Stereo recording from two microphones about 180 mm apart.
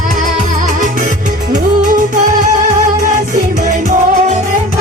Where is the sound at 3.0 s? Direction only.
45° right (ahead or behind).